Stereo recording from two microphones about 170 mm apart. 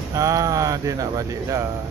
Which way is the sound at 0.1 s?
20° right (ahead or behind).